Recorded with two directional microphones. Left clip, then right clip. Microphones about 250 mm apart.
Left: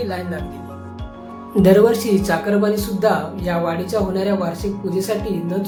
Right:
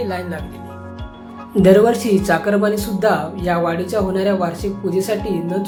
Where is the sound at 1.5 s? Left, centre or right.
Centre.